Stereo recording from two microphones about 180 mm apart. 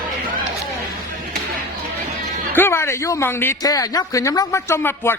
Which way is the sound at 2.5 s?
15° left (ahead or behind).